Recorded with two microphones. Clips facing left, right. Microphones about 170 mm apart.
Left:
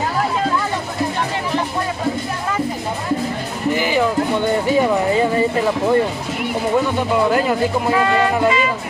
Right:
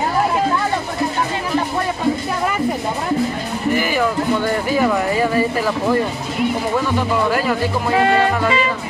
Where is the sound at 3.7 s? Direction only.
20° left (ahead or behind).